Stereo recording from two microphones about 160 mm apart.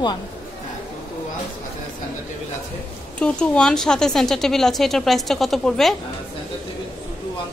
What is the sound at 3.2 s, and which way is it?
A woman's voice, 5° left (ahead or behind).